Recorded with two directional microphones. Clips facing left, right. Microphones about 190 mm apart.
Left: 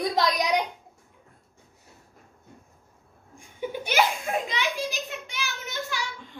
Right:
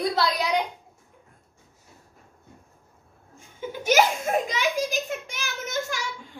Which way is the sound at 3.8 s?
45° right (ahead or behind).